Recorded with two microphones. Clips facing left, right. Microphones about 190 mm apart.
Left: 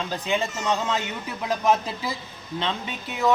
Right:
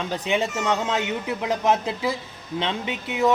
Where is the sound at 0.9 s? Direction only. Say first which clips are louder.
Right 4 dB; 70° right (ahead or behind).